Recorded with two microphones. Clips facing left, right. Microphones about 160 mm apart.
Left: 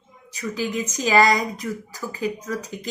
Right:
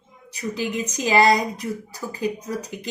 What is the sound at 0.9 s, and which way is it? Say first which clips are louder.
Speech: left 1 dB; 15° right (ahead or behind).